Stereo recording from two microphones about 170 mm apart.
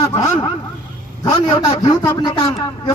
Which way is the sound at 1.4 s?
25° left (ahead or behind).